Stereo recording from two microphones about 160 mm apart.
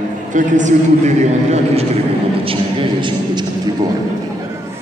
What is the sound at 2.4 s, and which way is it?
A man's voice, 35° right (ahead or behind).